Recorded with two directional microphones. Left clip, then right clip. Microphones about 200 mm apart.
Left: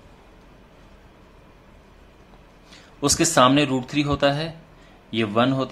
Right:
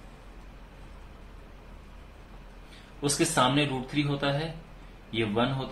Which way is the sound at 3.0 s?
50° left (ahead or behind).